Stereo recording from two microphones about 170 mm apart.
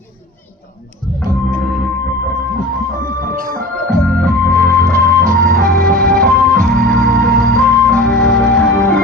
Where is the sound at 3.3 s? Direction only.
55° right (ahead or behind).